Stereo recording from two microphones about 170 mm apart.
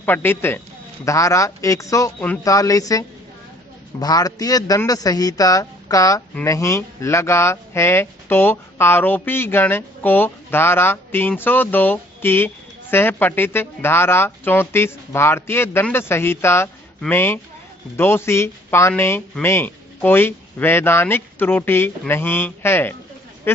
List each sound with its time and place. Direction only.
0.0 s a man's voice: 10° left (ahead or behind)